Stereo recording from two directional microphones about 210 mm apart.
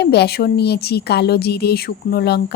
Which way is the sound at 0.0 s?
50° left (ahead or behind).